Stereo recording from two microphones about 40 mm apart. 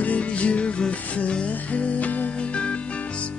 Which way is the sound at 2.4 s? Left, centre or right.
Left.